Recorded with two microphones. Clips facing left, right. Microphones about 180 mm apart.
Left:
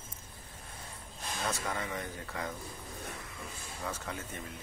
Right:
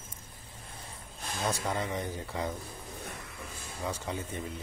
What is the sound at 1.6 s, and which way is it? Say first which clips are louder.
Speech: right 4 dB; 15° right (ahead or behind).